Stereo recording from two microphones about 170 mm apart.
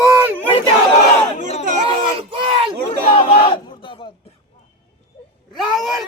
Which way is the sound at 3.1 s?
30° left (ahead or behind).